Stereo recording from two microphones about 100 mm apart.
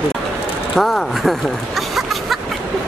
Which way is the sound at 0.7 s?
Centre (ahead or behind).